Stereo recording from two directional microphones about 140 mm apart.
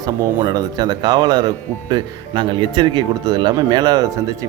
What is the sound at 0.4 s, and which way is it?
Speech, 30° right (ahead or behind).